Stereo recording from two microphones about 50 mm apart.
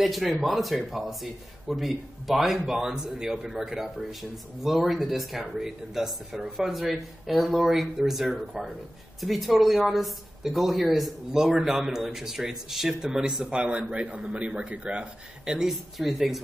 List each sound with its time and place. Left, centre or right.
0.0 s speech: centre